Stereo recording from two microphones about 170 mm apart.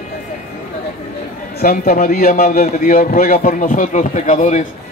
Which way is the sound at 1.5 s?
60° left (ahead or behind).